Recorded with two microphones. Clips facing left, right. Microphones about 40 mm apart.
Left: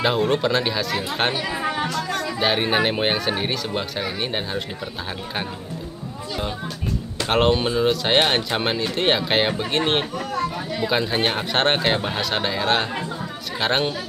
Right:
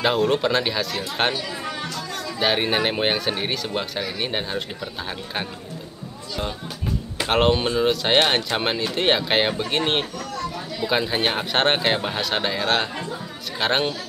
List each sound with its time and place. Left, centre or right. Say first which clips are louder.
0.3 s speech: even; centre
1.3 s speech: left 4 dB; left
1.9 s music: left 5 dB; centre
2.3 s speech: even; centre
7.2 s speech: even; centre
10.1 s chatter: left 4 dB; left
10.9 s speech: even; centre